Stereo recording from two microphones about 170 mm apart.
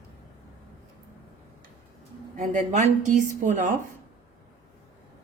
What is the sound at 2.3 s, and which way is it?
A woman's voice, 45° right (ahead or behind).